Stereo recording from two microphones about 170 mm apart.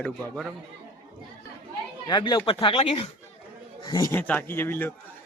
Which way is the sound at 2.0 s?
25° left (ahead or behind).